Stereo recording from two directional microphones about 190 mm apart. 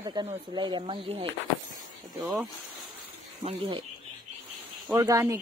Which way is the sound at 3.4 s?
30° right (ahead or behind).